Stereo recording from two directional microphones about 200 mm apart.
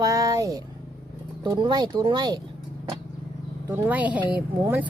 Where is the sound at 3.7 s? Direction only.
10° right (ahead or behind).